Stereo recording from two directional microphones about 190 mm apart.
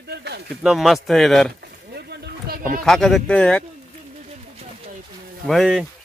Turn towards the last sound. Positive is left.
turn(degrees=0)  # may be behind; listen again after turning